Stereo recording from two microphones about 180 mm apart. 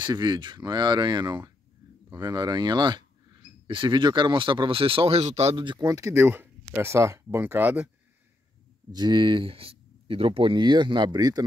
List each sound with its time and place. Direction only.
0.0 s speech: 25° right (ahead or behind)
8.9 s speech: 25° right (ahead or behind)